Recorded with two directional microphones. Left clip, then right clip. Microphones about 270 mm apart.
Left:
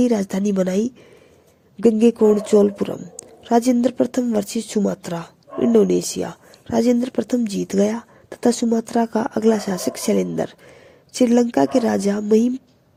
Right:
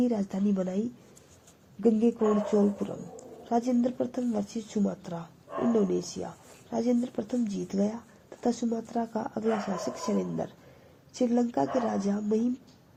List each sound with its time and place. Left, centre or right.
0.0 s speech: left
1.8 s speech: left